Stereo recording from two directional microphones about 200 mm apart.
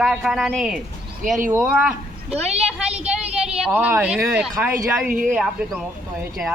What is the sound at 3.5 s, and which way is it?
Speech, 5° right (ahead or behind).